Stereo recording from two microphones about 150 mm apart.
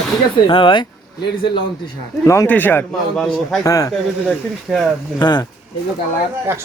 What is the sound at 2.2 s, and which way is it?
A man's voice, 20° left (ahead or behind).